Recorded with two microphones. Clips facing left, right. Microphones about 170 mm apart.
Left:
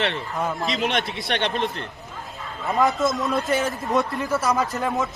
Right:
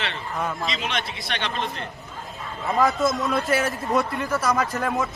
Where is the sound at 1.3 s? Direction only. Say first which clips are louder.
Left 4 dB; 60° left (ahead or behind).